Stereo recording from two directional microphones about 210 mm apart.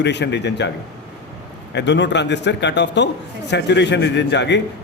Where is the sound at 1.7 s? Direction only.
55° left (ahead or behind).